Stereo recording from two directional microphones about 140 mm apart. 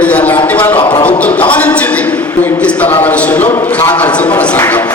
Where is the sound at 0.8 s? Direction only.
35° left (ahead or behind).